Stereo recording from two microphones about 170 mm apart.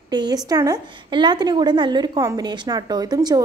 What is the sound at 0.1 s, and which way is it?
A woman's voice, 25° right (ahead or behind).